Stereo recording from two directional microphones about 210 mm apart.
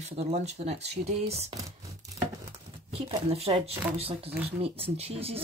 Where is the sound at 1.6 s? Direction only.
15° right (ahead or behind).